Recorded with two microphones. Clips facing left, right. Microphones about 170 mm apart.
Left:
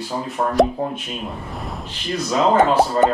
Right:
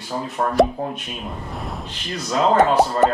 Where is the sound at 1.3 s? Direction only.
Centre (ahead or behind).